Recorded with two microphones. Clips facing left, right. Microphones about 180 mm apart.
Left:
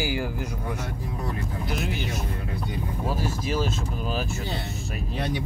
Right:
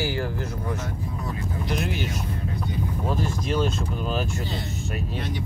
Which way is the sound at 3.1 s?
5° left (ahead or behind).